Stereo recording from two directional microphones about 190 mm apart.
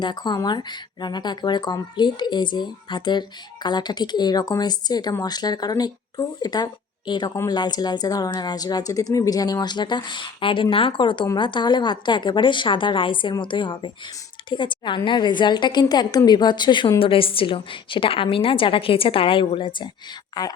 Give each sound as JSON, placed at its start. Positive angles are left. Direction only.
{"t": 0.0, "sound": "a woman's voice", "side_deg": 25}